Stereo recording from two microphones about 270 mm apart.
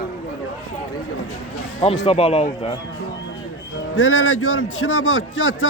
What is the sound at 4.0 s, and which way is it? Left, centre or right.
A man's voice, left.